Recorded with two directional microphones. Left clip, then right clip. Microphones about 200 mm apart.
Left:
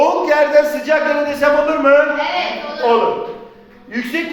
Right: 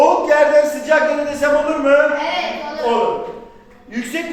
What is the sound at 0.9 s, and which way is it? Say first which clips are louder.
Music: right 2 dB; 15° left (ahead or behind).